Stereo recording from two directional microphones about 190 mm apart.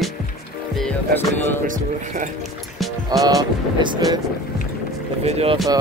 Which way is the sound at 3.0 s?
20° right (ahead or behind).